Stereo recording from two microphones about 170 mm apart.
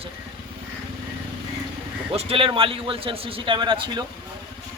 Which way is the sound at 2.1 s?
35° right (ahead or behind).